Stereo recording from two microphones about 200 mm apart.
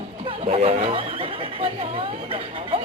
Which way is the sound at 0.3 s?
30° right (ahead or behind).